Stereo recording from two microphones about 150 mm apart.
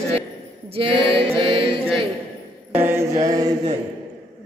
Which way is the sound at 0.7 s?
35° right (ahead or behind).